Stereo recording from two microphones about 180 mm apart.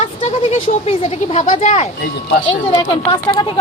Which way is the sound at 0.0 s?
35° left (ahead or behind).